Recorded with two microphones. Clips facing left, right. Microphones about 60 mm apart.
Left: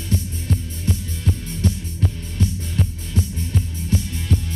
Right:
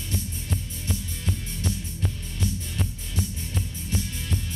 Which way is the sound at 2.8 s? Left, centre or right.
Centre.